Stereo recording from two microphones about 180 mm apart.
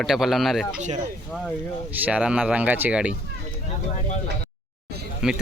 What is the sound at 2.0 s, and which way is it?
Speech, 5° right (ahead or behind).